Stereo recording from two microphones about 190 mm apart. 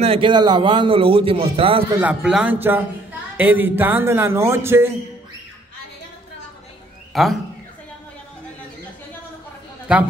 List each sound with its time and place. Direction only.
0.0 s a man's voice: 30° right (ahead or behind)
2.0 s a woman's voice: 5° right (ahead or behind)
7.1 s a sound: centre (ahead or behind)
9.9 s a man's voice: 5° right (ahead or behind)